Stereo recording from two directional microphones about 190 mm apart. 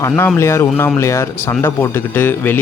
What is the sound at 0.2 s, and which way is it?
Speech, 15° left (ahead or behind).